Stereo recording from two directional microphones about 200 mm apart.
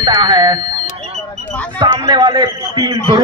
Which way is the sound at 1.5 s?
5° left (ahead or behind).